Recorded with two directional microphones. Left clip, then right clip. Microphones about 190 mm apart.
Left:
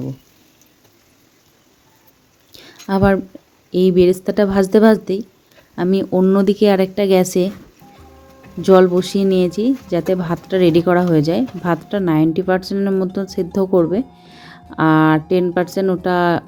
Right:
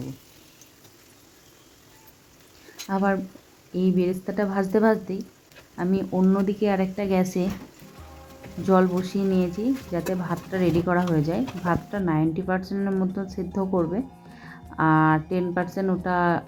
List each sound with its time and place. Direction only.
2.8 s speech: 40° left (ahead or behind)
8.6 s speech: 35° left (ahead or behind)